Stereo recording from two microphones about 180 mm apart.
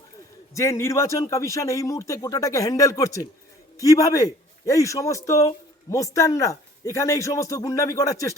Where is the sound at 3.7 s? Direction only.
20° left (ahead or behind).